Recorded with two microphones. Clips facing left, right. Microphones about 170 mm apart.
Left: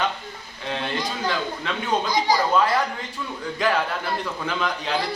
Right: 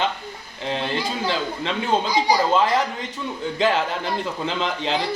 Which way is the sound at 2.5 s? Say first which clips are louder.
Right 1 dB; 25° right (ahead or behind).